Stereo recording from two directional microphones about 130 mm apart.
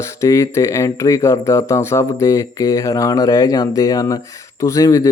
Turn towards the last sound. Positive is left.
turn(degrees=25)  # may be behind; listen again after turning